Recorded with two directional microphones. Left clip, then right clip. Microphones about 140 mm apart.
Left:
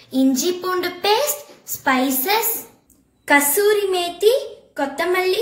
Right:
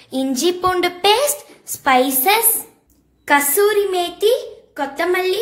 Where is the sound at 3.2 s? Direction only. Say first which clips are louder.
Right 1 dB; 55° right (ahead or behind).